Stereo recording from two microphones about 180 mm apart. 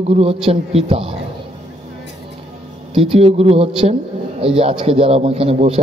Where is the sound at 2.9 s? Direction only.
35° right (ahead or behind).